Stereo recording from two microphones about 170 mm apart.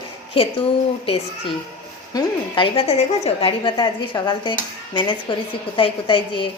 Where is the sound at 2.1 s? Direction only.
30° left (ahead or behind).